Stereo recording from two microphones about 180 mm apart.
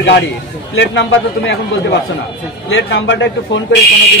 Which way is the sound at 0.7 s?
80° left.